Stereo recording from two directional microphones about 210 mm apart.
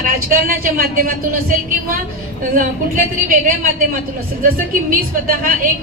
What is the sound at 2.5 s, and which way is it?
Speech, 40° right (ahead or behind).